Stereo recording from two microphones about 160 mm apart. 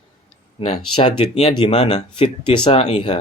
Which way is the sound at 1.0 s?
30° left (ahead or behind).